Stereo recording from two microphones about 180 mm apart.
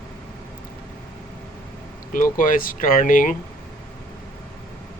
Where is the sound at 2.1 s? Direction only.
50° left (ahead or behind).